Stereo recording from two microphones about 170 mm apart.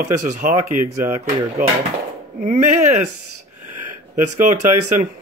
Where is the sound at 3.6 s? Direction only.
50° right (ahead or behind).